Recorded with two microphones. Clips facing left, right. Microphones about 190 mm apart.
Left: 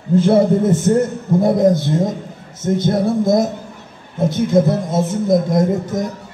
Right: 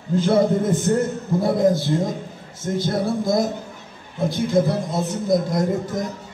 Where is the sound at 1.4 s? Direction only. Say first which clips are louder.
Left 4 dB; 20° left (ahead or behind).